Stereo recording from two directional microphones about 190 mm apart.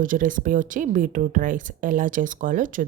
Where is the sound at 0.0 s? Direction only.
45° right (ahead or behind).